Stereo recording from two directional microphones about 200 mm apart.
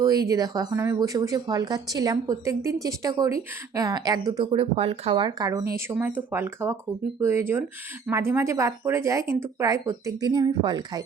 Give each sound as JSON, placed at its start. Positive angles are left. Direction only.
{"t": 0.0, "sound": "speech", "side_deg": -15}